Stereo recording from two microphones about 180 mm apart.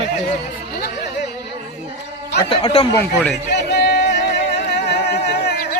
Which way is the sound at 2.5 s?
30° left (ahead or behind).